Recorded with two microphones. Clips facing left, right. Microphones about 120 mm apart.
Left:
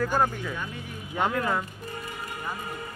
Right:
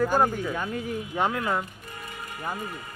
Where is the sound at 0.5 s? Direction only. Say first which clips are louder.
Right 5 dB; 50° right (ahead or behind).